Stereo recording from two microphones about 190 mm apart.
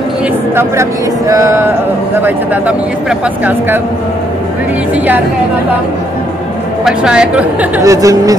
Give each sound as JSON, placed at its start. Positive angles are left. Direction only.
{"t": 0.6, "sound": "speech", "side_deg": -15}
{"t": 6.8, "sound": "speech", "side_deg": -5}
{"t": 7.8, "sound": "speech", "side_deg": -15}